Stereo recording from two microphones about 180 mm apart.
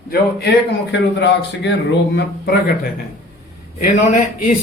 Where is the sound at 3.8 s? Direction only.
45° left (ahead or behind).